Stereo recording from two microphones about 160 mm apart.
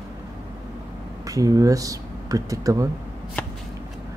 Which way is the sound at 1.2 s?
20° right (ahead or behind).